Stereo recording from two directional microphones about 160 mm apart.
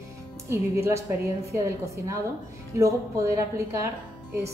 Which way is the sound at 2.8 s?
20° right (ahead or behind).